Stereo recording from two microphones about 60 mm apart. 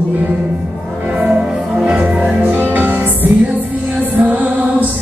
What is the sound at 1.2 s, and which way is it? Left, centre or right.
Music, centre.